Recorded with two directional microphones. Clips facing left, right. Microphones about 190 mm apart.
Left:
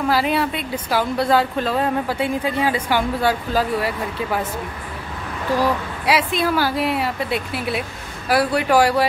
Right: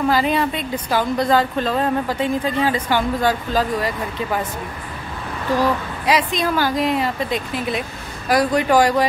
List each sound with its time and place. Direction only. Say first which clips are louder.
0.1 s a woman's voice: right 1 dB; 5° left (ahead or behind)
5.6 s a woman's voice: right 1 dB; 5° left (ahead or behind)